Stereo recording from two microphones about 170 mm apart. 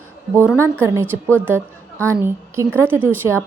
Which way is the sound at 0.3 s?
15° right (ahead or behind).